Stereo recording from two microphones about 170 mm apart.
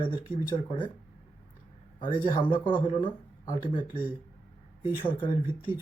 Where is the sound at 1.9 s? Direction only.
30° left (ahead or behind).